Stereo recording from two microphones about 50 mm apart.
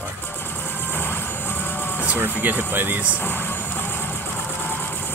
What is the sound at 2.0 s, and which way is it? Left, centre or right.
Speech, right.